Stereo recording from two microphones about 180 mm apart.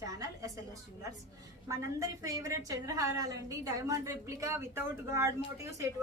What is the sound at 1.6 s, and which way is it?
A woman's voice, 20° right (ahead or behind).